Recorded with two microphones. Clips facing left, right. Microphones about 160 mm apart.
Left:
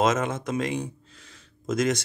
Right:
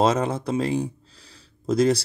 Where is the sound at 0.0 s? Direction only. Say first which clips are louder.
Right 3 dB; 35° right (ahead or behind).